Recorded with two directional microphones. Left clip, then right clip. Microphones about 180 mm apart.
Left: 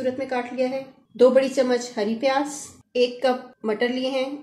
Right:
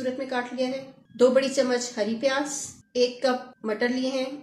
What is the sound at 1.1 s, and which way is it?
A woman's voice, 35° left (ahead or behind).